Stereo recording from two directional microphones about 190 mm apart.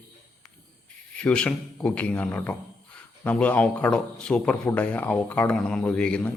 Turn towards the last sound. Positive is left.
turn(degrees=5)  # may be behind; listen again after turning